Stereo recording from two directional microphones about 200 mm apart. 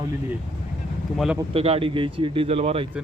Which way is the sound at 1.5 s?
30° right (ahead or behind).